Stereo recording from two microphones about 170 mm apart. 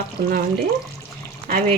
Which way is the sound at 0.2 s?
60° right (ahead or behind).